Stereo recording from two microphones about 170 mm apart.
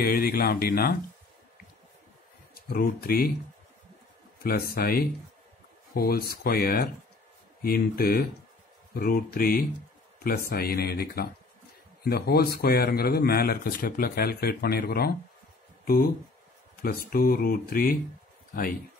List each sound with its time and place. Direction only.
0.0 s speech: 60° left (ahead or behind)
2.5 s speech: 60° left (ahead or behind)
4.4 s speech: 60° left (ahead or behind)
17.1 s speech: 60° left (ahead or behind)